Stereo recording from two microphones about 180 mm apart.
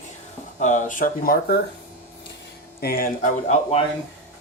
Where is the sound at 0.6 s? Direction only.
45° left (ahead or behind).